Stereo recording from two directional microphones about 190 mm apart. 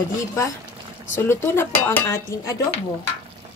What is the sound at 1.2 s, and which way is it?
A woman's voice, 10° left (ahead or behind).